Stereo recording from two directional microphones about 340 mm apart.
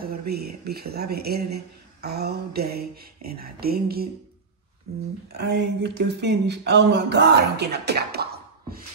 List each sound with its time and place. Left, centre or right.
0.7 s speech: right
5.3 s speech: right